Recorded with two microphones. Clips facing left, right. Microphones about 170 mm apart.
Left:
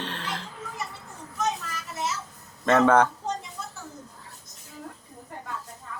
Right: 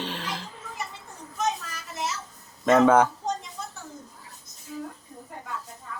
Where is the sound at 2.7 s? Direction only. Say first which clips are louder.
Right 1 dB; 10° right (ahead or behind).